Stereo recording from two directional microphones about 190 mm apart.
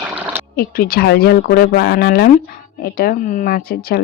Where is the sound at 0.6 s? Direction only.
50° left (ahead or behind).